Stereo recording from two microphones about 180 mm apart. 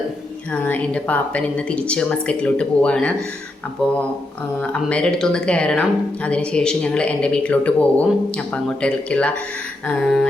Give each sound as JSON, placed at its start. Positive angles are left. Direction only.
{"t": 0.5, "sound": "speech", "side_deg": 10}
{"t": 4.7, "sound": "speech", "side_deg": 5}